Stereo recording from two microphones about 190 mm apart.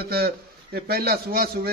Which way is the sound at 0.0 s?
55° right (ahead or behind).